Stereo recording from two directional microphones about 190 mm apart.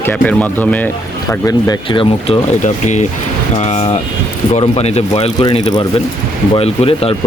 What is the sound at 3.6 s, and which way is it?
Speech, 35° left (ahead or behind).